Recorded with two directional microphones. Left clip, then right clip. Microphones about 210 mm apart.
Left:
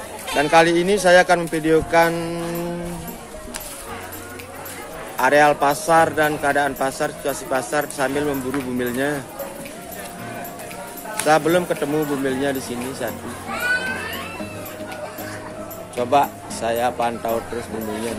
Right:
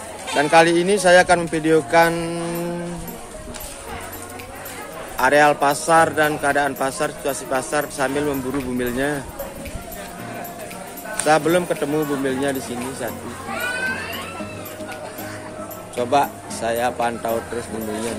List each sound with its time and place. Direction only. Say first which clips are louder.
0.3 s a man's voice: right 1 dB; 5° right (ahead or behind)
5.1 s a man's voice: even; 5° right (ahead or behind)
11.2 s a man's voice: even; centre (ahead or behind)
16.0 s a man's voice: left 1 dB; centre (ahead or behind)